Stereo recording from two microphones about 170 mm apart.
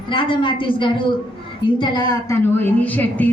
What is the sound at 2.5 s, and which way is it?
Speech, 10° left (ahead or behind).